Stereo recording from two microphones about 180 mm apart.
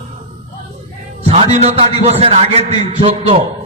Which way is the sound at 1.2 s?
35° right (ahead or behind).